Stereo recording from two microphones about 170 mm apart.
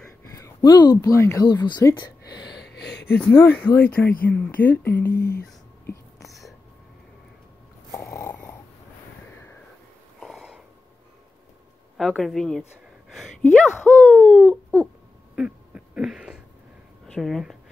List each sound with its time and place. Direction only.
0.2 s speech: 20° left (ahead or behind)
2.4 s a sound: 80° left
3.2 s speech: 10° left (ahead or behind)
6.2 s whispering: centre (ahead or behind)
7.9 s a sound: 15° left (ahead or behind)
10.2 s snort: centre (ahead or behind)
12.0 s speech: centre (ahead or behind)
15.3 s a sound: 5° right (ahead or behind)
17.1 s speech: centre (ahead or behind)